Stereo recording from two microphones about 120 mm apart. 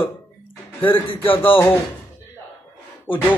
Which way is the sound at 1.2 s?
15° left (ahead or behind).